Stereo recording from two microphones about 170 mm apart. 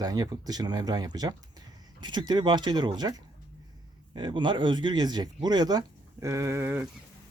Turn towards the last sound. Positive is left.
turn(degrees=-10)  # may be behind; listen again after turning